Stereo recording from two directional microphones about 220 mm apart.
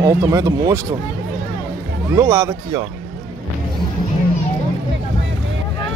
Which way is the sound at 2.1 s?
15° right (ahead or behind).